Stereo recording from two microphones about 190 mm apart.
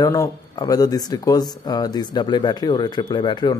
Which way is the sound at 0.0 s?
20° left (ahead or behind).